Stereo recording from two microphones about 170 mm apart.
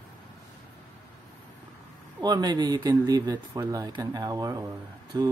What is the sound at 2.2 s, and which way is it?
Speech, 25° right (ahead or behind).